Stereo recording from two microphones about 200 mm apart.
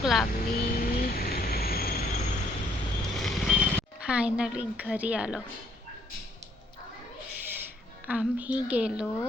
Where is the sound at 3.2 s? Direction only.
5° right (ahead or behind).